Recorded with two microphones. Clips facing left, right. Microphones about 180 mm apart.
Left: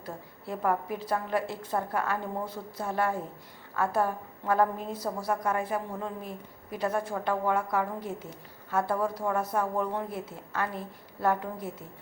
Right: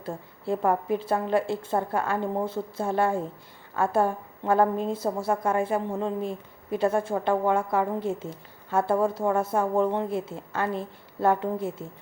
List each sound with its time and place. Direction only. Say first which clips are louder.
0.0 s a woman's voice: right 6 dB; 25° right (ahead or behind)